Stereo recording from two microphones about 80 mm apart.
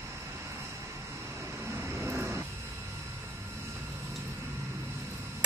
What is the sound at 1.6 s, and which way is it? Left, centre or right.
Vehicle, right.